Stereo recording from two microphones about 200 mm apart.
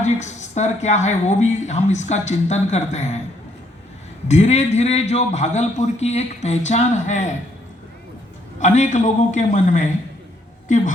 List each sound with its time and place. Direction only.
0.0 s a woman's voice: 35° left (ahead or behind)
4.3 s a woman's voice: 35° left (ahead or behind)
8.5 s a woman's voice: 35° left (ahead or behind)